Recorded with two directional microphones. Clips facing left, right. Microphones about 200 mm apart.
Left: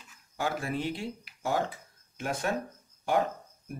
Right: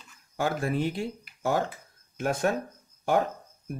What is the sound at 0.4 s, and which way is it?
Speech, 50° right (ahead or behind).